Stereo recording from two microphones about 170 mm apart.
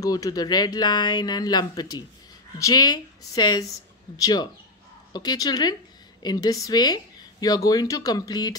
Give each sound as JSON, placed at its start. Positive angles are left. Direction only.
{"t": 0.0, "sound": "a woman's voice", "side_deg": 20}